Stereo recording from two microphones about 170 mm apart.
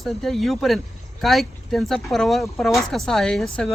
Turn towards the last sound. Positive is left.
turn(degrees=5)  # may be behind; listen again after turning